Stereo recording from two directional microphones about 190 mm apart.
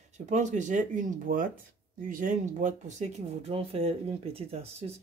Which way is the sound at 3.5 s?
30° right (ahead or behind).